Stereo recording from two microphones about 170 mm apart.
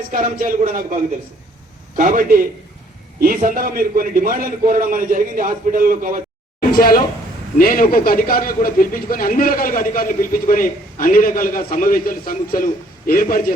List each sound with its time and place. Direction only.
0.1 s a man's voice: 55° right (ahead or behind)
2.0 s a man's voice: 50° right (ahead or behind)
6.7 s a man's voice: 60° left (ahead or behind)